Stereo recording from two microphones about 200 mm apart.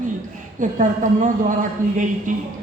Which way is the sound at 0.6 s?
40° right (ahead or behind).